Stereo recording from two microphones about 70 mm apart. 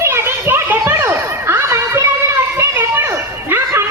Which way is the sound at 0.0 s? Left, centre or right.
Right.